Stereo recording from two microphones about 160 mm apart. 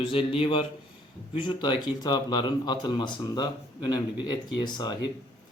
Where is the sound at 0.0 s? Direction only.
35° left (ahead or behind).